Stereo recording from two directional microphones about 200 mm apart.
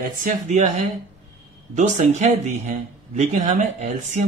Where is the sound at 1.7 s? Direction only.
35° right (ahead or behind).